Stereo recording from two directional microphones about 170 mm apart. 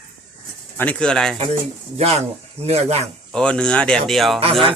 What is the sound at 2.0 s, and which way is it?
Speech, 35° right (ahead or behind).